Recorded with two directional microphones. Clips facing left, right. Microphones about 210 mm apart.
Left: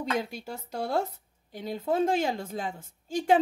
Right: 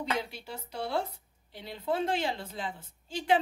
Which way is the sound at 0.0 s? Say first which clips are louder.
Left 3 dB; 45° left (ahead or behind).